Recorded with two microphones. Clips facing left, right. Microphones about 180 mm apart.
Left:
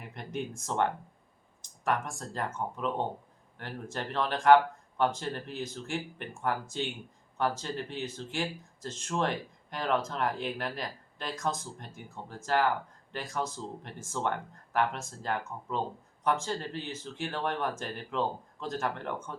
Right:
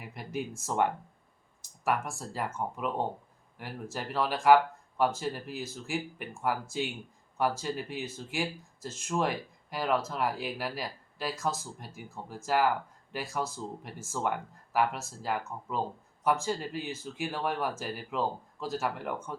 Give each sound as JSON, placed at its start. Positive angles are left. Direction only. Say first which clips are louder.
{"t": 0.0, "sound": "speech", "louder": "even", "side_deg": -5}